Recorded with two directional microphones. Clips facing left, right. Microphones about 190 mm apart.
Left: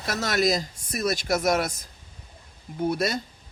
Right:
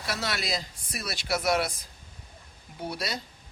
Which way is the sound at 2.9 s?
50° left (ahead or behind).